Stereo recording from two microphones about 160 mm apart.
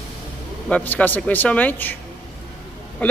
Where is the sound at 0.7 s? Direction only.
10° left (ahead or behind).